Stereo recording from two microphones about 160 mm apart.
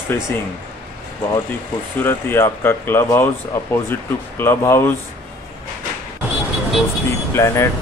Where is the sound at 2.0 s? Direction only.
15° left (ahead or behind).